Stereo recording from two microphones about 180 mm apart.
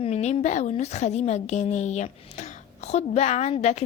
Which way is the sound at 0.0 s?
40° left (ahead or behind).